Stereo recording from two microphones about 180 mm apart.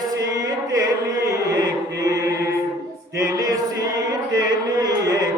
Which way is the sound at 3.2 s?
20° right (ahead or behind).